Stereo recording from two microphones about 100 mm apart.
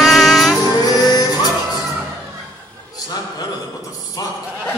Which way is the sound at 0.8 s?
40° left (ahead or behind).